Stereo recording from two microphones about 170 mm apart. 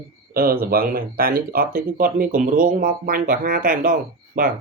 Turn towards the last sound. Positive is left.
turn(degrees=-50)  # may be behind; listen again after turning